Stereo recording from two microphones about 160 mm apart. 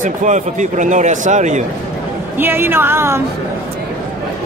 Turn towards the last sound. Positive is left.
turn(degrees=-15)  # may be behind; listen again after turning